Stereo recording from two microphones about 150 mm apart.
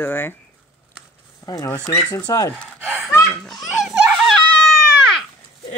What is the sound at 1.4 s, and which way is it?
Speech, 25° left (ahead or behind).